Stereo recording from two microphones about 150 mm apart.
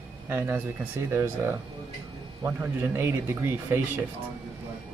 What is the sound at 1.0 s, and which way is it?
Speech, 15° right (ahead or behind).